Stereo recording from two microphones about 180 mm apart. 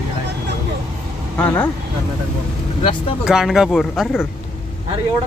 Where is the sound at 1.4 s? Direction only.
10° left (ahead or behind).